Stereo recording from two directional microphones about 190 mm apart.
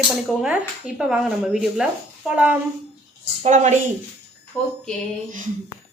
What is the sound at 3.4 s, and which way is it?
Speech, 40° right (ahead or behind).